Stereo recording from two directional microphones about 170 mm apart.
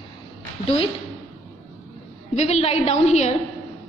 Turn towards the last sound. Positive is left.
turn(degrees=40)  # may be behind; listen again after turning